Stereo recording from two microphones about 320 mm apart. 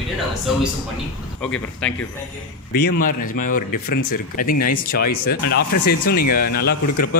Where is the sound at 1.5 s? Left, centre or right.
Centre.